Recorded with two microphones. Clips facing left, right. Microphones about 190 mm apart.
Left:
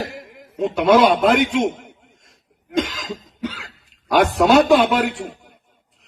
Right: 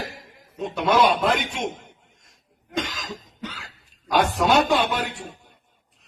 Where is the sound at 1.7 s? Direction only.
70° left (ahead or behind).